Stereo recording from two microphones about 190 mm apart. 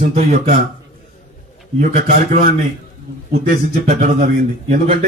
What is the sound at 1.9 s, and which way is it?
Speech, 35° right (ahead or behind).